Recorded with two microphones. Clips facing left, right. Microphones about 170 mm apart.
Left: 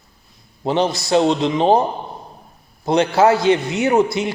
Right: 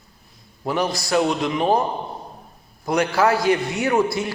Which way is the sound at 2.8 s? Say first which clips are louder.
Left 5 dB; 25° left (ahead or behind).